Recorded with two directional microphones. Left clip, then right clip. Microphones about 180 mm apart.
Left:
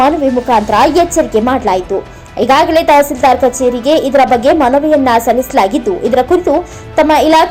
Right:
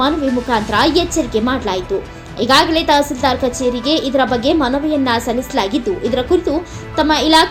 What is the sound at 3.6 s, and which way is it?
Speech, 30° left (ahead or behind).